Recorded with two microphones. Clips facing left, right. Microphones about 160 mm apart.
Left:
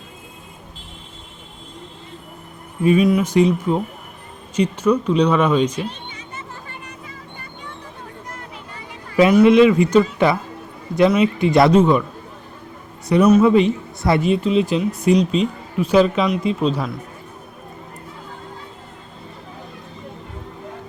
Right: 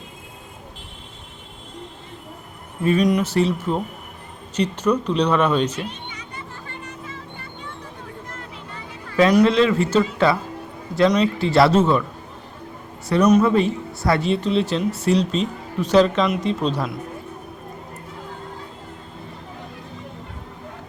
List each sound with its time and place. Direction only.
2.8 s speech: 5° left (ahead or behind)
5.9 s a sound: 25° left (ahead or behind)
9.5 s speech: 15° left (ahead or behind)
13.1 s speech: 10° left (ahead or behind)